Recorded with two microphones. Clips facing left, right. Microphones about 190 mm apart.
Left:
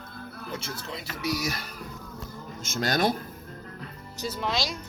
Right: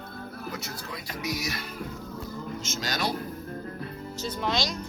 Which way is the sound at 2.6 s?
55° left (ahead or behind).